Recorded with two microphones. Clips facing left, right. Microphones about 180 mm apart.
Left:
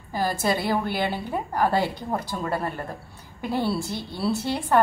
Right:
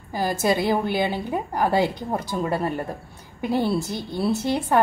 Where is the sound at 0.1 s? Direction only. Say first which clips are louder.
Right 2 dB; 15° right (ahead or behind).